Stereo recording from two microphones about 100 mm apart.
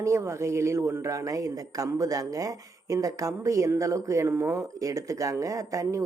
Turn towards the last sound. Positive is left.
turn(degrees=-35)  # may be behind; listen again after turning